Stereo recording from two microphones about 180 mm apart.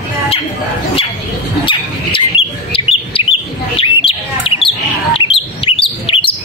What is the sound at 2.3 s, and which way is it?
Bird, 30° left (ahead or behind).